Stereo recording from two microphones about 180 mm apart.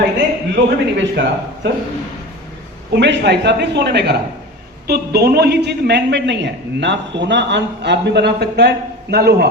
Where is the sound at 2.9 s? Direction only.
70° right (ahead or behind).